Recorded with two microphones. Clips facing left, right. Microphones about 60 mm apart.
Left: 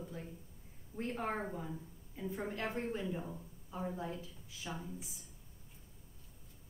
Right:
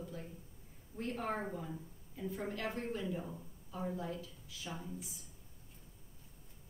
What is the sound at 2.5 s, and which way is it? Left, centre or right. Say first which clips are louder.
Speech: left 1 dB; left.